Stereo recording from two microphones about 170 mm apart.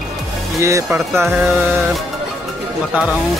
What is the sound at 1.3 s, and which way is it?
Music, centre (ahead or behind).